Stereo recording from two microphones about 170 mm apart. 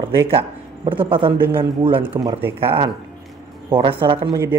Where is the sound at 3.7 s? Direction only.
30° right (ahead or behind).